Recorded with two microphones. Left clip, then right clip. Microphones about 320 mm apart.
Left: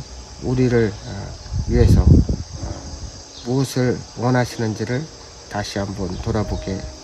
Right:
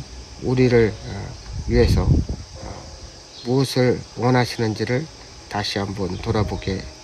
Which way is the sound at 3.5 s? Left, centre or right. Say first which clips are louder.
Right 2 dB; centre.